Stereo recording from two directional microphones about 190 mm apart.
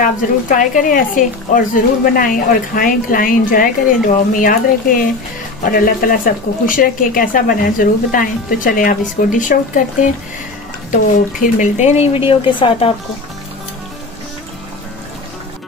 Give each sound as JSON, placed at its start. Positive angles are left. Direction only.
{"t": 0.0, "sound": "a woman's voice", "side_deg": 45}
{"t": 11.4, "sound": "speech", "side_deg": 40}